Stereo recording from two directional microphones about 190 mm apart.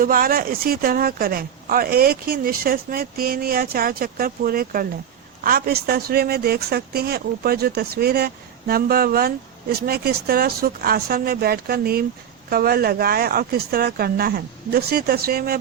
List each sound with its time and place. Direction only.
0.0 s speech: 50° right (ahead or behind)